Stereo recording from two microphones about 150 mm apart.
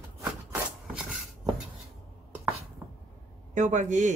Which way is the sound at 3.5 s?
55° right (ahead or behind).